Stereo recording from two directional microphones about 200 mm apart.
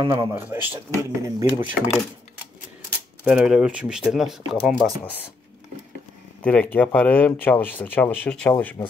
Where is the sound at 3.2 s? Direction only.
5° right (ahead or behind).